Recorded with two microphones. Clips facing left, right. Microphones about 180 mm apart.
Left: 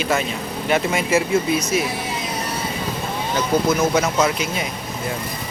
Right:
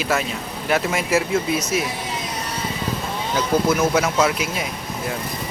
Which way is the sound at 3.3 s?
5° right (ahead or behind).